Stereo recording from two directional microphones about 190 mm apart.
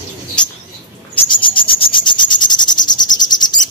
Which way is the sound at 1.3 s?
25° left (ahead or behind).